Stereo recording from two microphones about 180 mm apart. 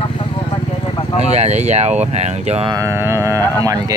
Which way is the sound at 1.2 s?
40° right (ahead or behind).